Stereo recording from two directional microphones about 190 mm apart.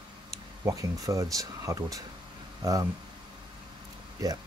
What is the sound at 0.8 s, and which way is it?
Speech, 15° right (ahead or behind).